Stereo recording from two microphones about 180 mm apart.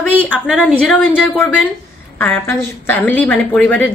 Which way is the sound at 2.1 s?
10° left (ahead or behind).